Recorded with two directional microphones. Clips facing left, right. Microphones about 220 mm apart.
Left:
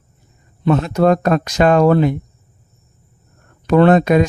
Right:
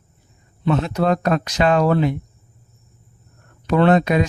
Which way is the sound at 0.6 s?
45° left (ahead or behind).